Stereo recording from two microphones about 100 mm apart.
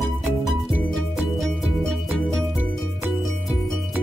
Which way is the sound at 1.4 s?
Centre (ahead or behind).